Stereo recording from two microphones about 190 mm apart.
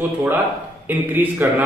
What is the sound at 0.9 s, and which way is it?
Speech, 10° right (ahead or behind).